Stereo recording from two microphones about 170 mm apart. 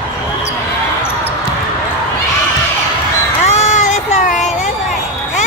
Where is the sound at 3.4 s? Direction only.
40° left (ahead or behind).